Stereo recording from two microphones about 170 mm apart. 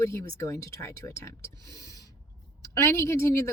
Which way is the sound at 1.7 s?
20° left (ahead or behind).